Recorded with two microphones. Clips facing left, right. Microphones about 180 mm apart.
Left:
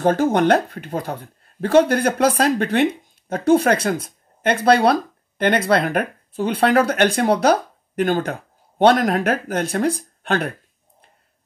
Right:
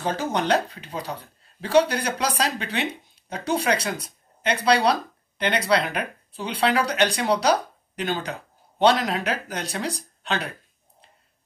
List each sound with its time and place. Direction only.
0.0 s speech: 50° left (ahead or behind)